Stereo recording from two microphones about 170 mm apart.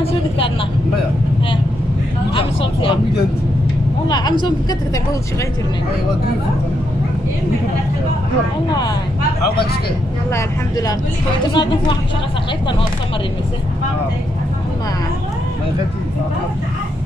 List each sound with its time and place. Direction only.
2.3 s vehicle: 30° left (ahead or behind)
4.1 s vehicle: 25° left (ahead or behind)
8.6 s speech: 25° left (ahead or behind)
10.3 s speech: 20° left (ahead or behind)